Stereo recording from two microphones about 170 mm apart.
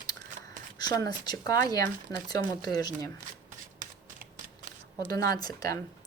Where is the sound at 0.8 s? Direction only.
25° left (ahead or behind).